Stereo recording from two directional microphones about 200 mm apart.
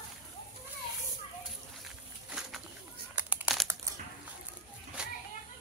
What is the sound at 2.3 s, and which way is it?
Bird, centre (ahead or behind).